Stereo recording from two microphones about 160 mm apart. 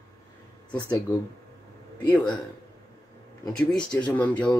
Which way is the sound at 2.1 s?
10° left (ahead or behind).